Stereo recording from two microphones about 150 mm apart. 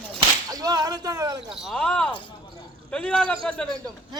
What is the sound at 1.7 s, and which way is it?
A man's voice, 5° left (ahead or behind).